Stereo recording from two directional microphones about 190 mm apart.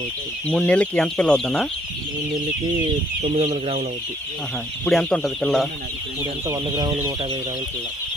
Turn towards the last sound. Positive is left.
turn(degrees=-20)  # may be behind; listen again after turning